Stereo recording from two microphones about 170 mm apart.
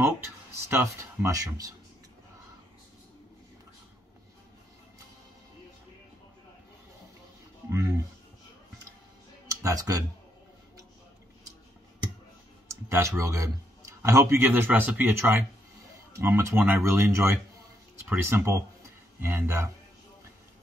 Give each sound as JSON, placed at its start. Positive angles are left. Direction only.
{"t": 0.0, "sound": "speech", "side_deg": -15}
{"t": 9.5, "sound": "speech", "side_deg": -20}
{"t": 12.9, "sound": "a man's voice", "side_deg": -15}